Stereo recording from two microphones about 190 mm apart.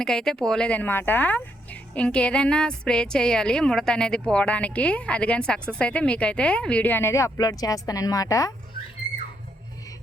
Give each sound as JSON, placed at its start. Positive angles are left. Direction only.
{"t": 0.0, "sound": "speech", "side_deg": 5}